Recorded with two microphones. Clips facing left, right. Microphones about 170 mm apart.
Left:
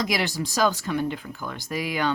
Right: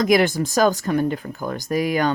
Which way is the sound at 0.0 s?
50° right (ahead or behind).